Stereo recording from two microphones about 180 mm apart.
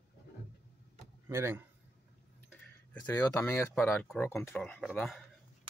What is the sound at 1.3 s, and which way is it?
Speech, 15° right (ahead or behind).